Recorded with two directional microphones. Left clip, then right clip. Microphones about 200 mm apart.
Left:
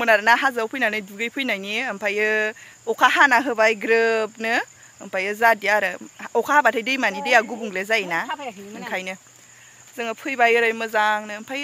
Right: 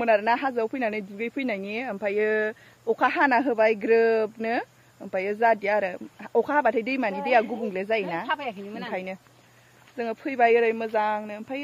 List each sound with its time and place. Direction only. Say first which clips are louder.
0.0 s speech: left 5 dB; 5° left (ahead or behind)
8.3 s speech: right 1 dB; 25° right (ahead or behind)
8.9 s speech: left 7 dB; 5° left (ahead or behind)